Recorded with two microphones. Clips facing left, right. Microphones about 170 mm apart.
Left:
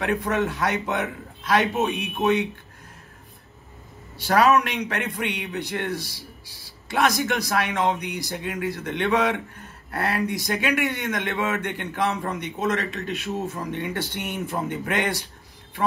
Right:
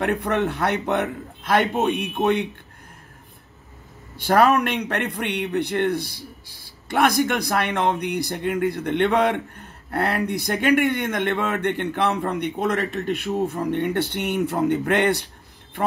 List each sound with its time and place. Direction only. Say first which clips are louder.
0.0 s a man's voice: right 2 dB; 60° right (ahead or behind)
4.2 s a man's voice: right 1 dB; 55° right (ahead or behind)